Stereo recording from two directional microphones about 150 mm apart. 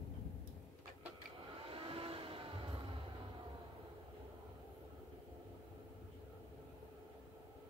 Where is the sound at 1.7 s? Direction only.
40° right (ahead or behind).